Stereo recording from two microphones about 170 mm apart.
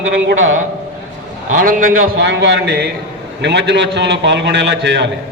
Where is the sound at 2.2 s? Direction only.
90° right.